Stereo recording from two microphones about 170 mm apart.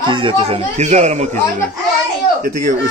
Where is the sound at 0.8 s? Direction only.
40° right (ahead or behind).